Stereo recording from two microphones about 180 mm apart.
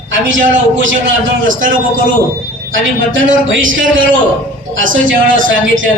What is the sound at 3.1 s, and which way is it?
A man's voice, 90° right.